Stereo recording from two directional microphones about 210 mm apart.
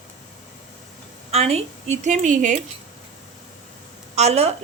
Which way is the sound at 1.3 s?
30° right (ahead or behind).